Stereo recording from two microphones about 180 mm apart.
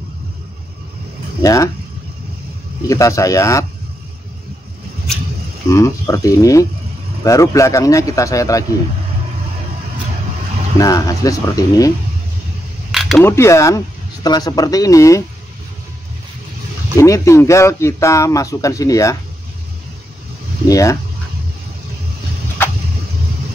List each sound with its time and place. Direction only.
1.4 s speech: 20° left (ahead or behind)
2.9 s speech: 20° left (ahead or behind)
5.7 s speech: 15° left (ahead or behind)
10.8 s speech: 20° left (ahead or behind)
13.2 s speech: 15° left (ahead or behind)
16.9 s speech: 15° left (ahead or behind)
20.6 s speech: 20° left (ahead or behind)